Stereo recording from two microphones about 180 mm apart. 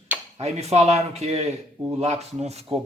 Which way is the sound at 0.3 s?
35° right (ahead or behind).